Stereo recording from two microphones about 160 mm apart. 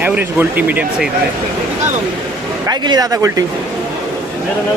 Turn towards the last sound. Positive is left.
turn(degrees=-20)  # may be behind; listen again after turning